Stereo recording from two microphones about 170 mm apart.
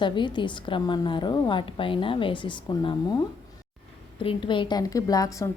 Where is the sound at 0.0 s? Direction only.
25° left (ahead or behind).